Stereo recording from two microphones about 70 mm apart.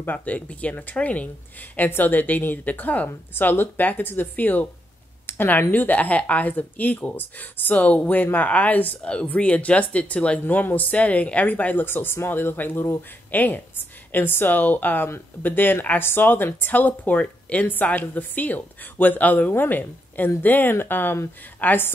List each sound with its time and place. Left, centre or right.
0.0 s speech: left